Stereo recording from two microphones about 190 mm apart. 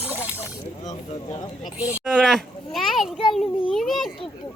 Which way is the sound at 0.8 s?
35° left (ahead or behind).